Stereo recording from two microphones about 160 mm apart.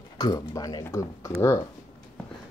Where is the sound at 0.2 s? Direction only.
25° left (ahead or behind).